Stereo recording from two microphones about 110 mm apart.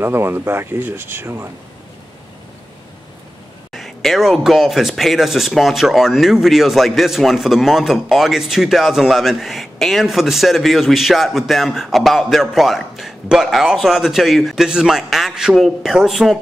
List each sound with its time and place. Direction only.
0.0 s speech: 20° right (ahead or behind)
3.7 s speech: centre (ahead or behind)